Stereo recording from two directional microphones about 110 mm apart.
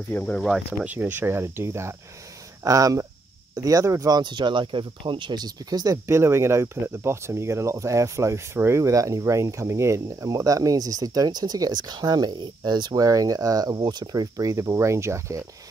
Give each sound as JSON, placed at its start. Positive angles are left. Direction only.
{"t": 0.1, "sound": "speech", "side_deg": 10}
{"t": 0.8, "sound": "speech", "side_deg": -15}
{"t": 4.2, "sound": "speech", "side_deg": -45}